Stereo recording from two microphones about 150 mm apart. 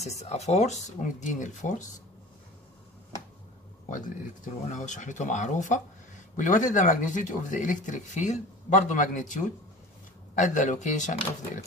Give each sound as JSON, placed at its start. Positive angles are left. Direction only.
{"t": 0.0, "sound": "speech", "side_deg": 45}
{"t": 4.6, "sound": "speech", "side_deg": 55}